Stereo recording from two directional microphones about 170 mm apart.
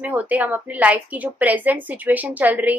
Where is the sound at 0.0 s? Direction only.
10° right (ahead or behind).